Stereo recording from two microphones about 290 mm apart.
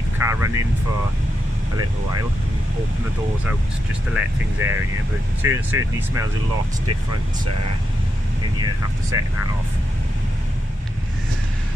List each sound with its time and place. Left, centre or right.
0.2 s vehicle: centre
4.2 s speech: centre
4.6 s speech: right
5.4 s speech: centre
9.1 s speech: centre